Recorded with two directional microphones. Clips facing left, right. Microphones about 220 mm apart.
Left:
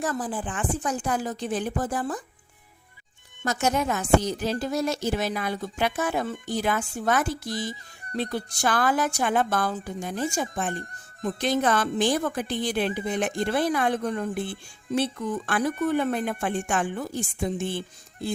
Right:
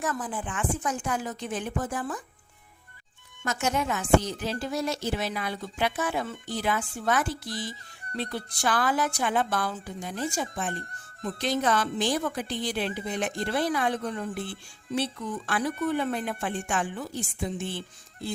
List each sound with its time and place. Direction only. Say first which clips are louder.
0.0 s speech: left 3 dB; 35° left (ahead or behind)
3.4 s a woman's voice: left 3 dB; 40° left (ahead or behind)